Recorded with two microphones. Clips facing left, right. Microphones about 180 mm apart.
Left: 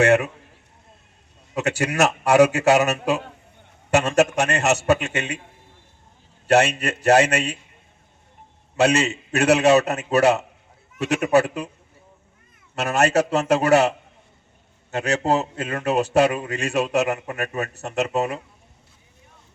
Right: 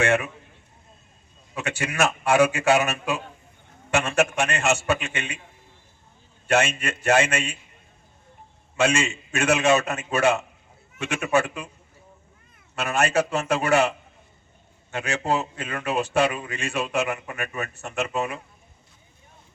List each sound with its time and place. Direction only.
0.0 s a man's voice: 40° left (ahead or behind)
1.5 s a man's voice: 40° left (ahead or behind)
6.5 s a man's voice: 40° left (ahead or behind)
8.7 s a man's voice: 40° left (ahead or behind)
12.7 s a man's voice: 40° left (ahead or behind)